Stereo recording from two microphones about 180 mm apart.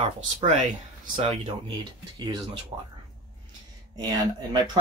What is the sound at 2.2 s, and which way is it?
Speech, 25° right (ahead or behind).